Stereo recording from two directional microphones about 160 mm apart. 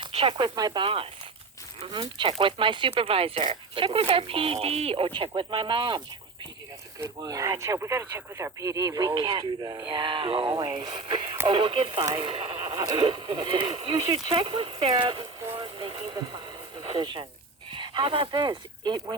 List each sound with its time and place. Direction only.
0.0 s speech: 35° right (ahead or behind)
7.2 s speech: 20° right (ahead or behind)
15.5 s radio: 30° right (ahead or behind)
17.7 s speech: 30° right (ahead or behind)